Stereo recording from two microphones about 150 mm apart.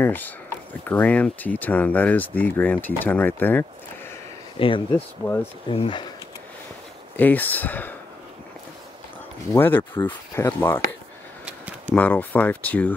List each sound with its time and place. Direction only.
0.0 s speech: 10° left (ahead or behind)
4.6 s speech: 35° left (ahead or behind)
4.9 s speech: 15° left (ahead or behind)
5.7 s speech: 35° left (ahead or behind)
7.2 s speech: 10° left (ahead or behind)
9.5 s speech: 15° left (ahead or behind)
11.9 s speech: 10° left (ahead or behind)